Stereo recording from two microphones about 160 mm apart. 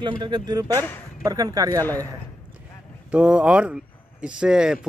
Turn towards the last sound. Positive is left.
turn(degrees=-5)  # may be behind; listen again after turning